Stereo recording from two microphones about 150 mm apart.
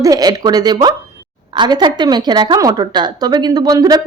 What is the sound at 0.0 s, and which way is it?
A woman's voice, 25° right (ahead or behind).